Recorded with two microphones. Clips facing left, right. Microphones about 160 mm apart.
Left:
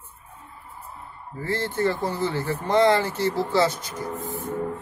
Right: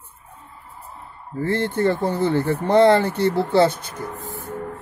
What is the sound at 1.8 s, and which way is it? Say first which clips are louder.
Speech: right 3 dB; 30° right (ahead or behind).